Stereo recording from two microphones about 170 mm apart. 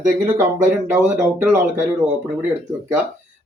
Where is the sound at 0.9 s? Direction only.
10° right (ahead or behind).